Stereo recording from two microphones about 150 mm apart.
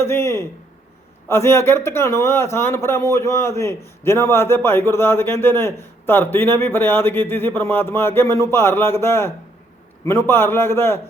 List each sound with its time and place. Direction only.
0.0 s a man's voice: 15° left (ahead or behind)